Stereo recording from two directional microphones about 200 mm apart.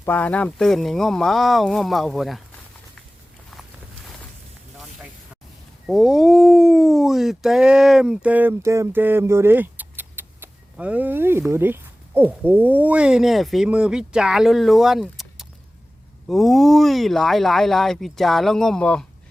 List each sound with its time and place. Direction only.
0.0 s speech: 10° left (ahead or behind)
5.8 s speech: 5° right (ahead or behind)